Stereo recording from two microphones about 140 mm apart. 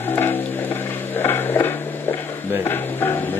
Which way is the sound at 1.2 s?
15° left (ahead or behind).